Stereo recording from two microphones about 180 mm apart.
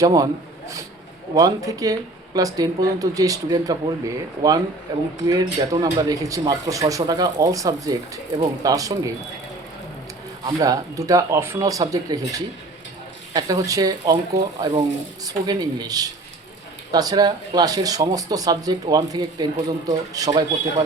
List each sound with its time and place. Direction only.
0.0 s speech: 20° right (ahead or behind)
1.4 s speech: 20° right (ahead or behind)
10.4 s speech: 20° right (ahead or behind)
13.3 s speech: 20° right (ahead or behind)